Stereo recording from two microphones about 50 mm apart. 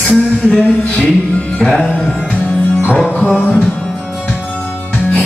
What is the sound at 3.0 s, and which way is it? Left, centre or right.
Music, centre.